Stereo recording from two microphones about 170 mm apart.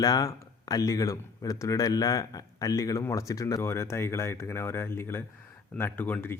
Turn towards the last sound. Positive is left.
turn(degrees=15)  # may be behind; listen again after turning